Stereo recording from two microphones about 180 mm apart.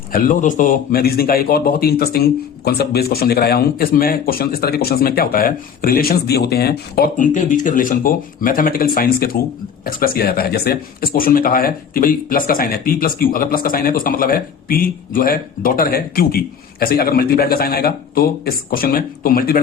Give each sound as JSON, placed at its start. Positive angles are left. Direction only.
{"t": 0.1, "sound": "a man's voice", "side_deg": 50}